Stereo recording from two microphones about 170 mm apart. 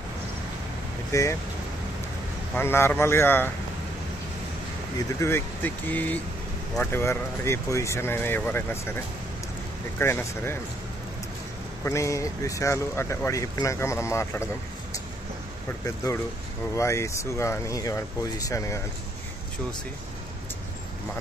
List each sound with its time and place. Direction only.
1.1 s speech: 15° left (ahead or behind)
2.5 s speech: 15° left (ahead or behind)
4.9 s speech: 15° left (ahead or behind)
11.8 s speech: 15° left (ahead or behind)
15.8 s speech: 20° left (ahead or behind)